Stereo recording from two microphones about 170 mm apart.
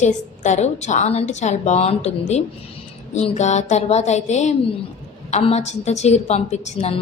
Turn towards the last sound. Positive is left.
turn(degrees=40)  # may be behind; listen again after turning